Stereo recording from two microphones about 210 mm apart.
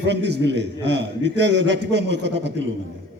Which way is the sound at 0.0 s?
55° right (ahead or behind).